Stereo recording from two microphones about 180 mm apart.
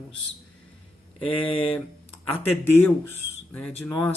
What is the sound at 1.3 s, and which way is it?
Speech, 30° left (ahead or behind).